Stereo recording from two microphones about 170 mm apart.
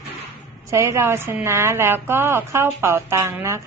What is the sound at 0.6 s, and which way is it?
A woman's voice, 15° right (ahead or behind).